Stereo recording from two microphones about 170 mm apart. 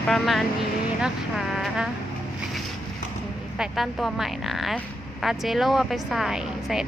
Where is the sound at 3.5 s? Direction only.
5° right (ahead or behind).